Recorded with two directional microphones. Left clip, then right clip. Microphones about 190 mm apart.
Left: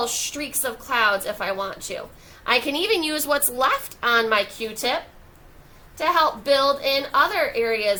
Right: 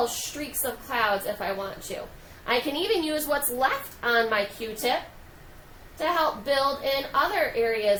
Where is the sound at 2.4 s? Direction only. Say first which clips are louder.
Left 4 dB; 30° left (ahead or behind).